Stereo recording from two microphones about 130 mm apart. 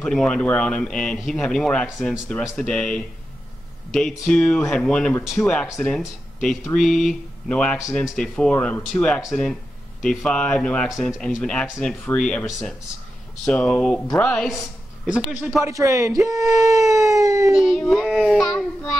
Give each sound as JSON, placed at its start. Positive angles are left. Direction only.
{"t": 0.0, "sound": "speech", "side_deg": 5}
{"t": 13.5, "sound": "speech", "side_deg": 10}
{"t": 15.1, "sound": "speech", "side_deg": -5}
{"t": 15.6, "sound": "speech", "side_deg": -25}
{"t": 17.5, "sound": "speech", "side_deg": -5}